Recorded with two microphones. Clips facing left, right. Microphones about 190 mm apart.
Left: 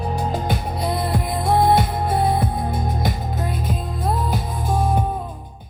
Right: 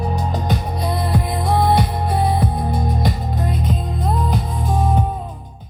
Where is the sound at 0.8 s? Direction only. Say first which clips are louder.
Even; 50° left (ahead or behind).